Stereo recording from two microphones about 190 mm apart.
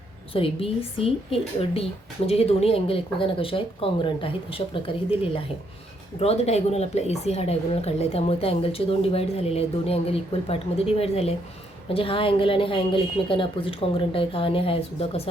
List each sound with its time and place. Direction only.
0.3 s a woman's voice: 30° left (ahead or behind)